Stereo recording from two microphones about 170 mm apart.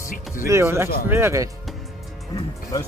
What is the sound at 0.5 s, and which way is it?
Speech, 15° right (ahead or behind).